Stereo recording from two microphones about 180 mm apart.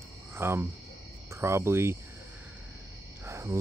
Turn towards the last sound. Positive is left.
turn(degrees=-15)  # may be behind; listen again after turning